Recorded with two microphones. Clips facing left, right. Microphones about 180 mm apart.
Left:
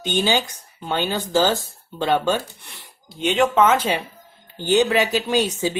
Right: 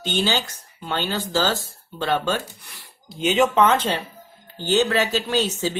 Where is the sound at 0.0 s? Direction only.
15° left (ahead or behind).